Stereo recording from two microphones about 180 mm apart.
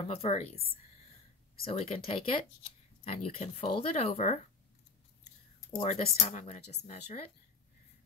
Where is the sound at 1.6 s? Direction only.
35° left (ahead or behind).